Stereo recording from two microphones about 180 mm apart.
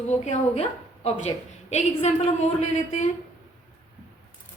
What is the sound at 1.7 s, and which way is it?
A woman's voice, 40° left (ahead or behind).